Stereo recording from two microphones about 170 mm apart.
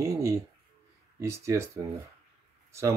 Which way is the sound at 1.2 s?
15° right (ahead or behind).